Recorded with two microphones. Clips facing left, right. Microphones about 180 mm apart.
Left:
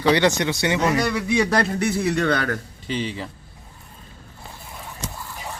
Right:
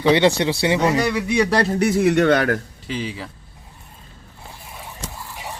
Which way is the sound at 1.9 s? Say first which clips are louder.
Right 5 dB; 45° right (ahead or behind).